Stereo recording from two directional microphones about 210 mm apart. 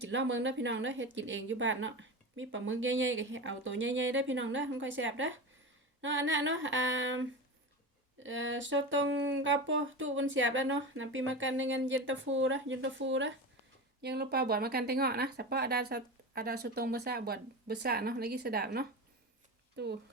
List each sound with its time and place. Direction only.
0.1 s a woman's voice: 60° right (ahead or behind)
14.0 s speech: 50° right (ahead or behind)